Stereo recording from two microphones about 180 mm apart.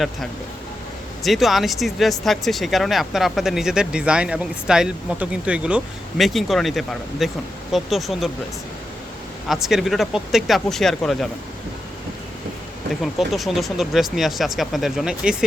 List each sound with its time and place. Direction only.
1.2 s speech: centre (ahead or behind)
9.5 s speech: centre (ahead or behind)
13.0 s speech: centre (ahead or behind)